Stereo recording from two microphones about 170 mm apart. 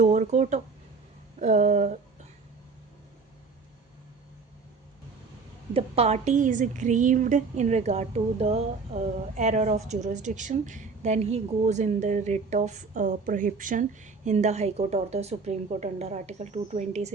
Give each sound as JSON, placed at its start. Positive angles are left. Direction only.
{"t": 0.0, "sound": "a woman's voice", "side_deg": -45}
{"t": 5.7, "sound": "a woman's voice", "side_deg": -35}